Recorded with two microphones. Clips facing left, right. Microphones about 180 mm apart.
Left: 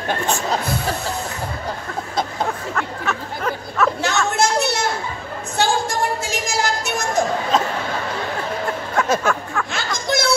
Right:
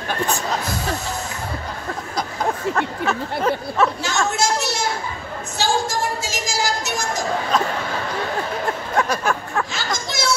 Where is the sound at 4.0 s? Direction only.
60° left (ahead or behind).